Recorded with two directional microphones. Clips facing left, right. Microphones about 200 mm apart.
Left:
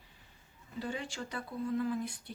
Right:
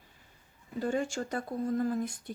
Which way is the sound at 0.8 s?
45° right (ahead or behind).